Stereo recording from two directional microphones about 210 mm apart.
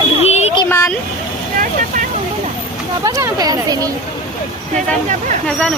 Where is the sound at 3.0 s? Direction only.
15° right (ahead or behind).